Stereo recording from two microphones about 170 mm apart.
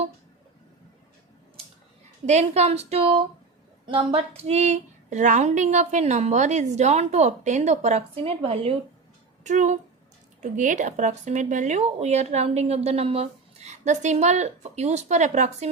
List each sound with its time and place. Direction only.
2.2 s speech: 40° right (ahead or behind)